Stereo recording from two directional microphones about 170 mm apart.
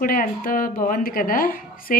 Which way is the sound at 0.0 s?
55° left (ahead or behind).